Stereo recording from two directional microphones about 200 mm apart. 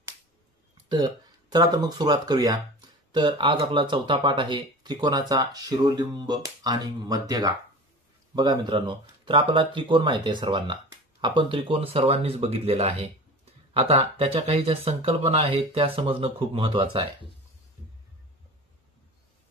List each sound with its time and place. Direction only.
0.8 s speech: 20° right (ahead or behind)